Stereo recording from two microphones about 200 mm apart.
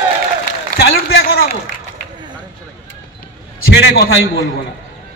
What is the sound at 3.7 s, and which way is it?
Speech, 60° left (ahead or behind).